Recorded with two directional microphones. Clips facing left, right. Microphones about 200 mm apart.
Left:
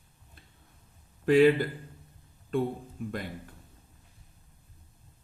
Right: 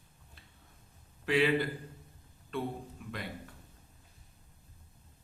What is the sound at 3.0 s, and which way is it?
Speech, 50° left (ahead or behind).